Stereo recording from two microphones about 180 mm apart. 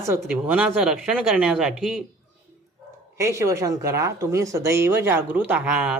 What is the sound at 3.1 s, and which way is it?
Speech, 15° right (ahead or behind).